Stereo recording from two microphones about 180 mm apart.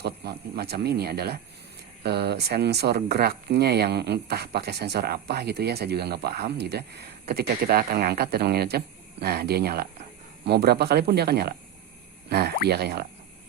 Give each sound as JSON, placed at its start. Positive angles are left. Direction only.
{"t": 0.0, "sound": "speech", "side_deg": -60}